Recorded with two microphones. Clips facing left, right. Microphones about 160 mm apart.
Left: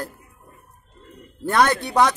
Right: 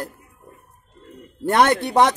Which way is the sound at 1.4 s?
25° right (ahead or behind).